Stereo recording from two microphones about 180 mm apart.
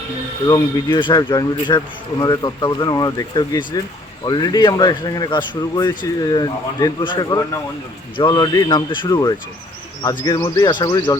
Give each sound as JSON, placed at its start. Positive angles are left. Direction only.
{"t": 0.4, "sound": "speech", "side_deg": 25}